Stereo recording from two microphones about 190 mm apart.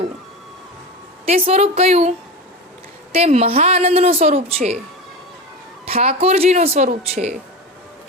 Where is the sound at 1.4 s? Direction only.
30° right (ahead or behind).